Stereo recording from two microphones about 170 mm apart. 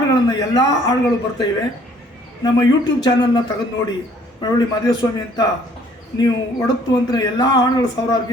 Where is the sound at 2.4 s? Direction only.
25° left (ahead or behind).